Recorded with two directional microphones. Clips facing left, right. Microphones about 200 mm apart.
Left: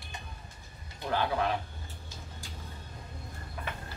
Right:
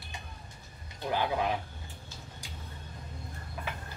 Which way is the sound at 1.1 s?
15° right (ahead or behind).